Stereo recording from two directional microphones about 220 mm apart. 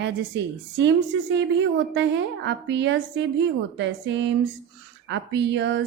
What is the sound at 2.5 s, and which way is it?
Speech, 50° right (ahead or behind).